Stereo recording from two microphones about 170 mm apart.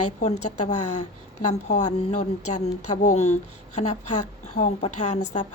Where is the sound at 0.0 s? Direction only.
45° left (ahead or behind).